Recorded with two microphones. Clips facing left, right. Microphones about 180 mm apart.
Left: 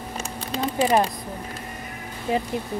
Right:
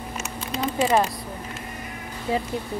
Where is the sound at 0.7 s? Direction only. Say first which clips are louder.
Left 1 dB; 35° left (ahead or behind).